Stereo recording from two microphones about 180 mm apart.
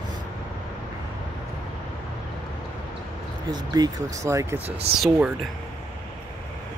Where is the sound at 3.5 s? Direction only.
20° right (ahead or behind).